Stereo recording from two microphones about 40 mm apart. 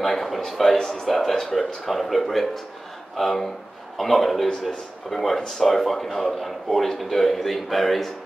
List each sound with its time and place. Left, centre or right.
0.0 s a man's voice: centre